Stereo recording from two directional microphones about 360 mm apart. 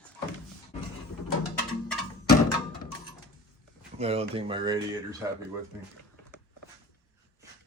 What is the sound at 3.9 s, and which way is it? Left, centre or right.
Speech, centre.